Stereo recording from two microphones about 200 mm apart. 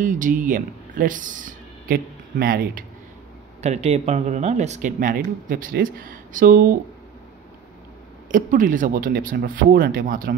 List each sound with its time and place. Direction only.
0.0 s speech: 40° right (ahead or behind)
3.6 s speech: 35° right (ahead or behind)
8.3 s speech: 40° right (ahead or behind)